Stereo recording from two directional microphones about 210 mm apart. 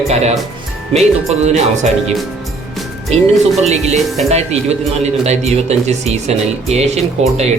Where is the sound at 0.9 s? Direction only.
30° right (ahead or behind).